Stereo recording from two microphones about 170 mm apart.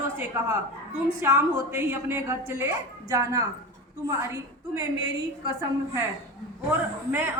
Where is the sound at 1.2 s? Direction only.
15° right (ahead or behind).